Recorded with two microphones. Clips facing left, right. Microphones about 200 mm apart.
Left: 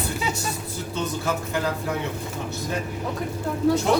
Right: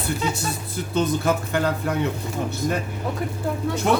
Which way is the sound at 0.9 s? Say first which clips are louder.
Right 6 dB; 60° right (ahead or behind).